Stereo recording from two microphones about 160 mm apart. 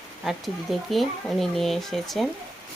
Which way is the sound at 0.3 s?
Centre (ahead or behind).